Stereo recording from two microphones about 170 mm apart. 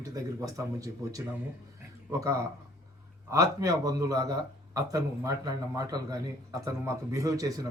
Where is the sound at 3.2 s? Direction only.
20° right (ahead or behind).